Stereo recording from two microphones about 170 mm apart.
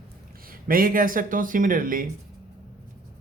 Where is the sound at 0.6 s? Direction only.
55° right (ahead or behind).